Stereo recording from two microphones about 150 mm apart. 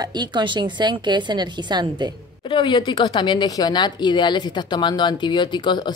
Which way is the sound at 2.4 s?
35° left (ahead or behind).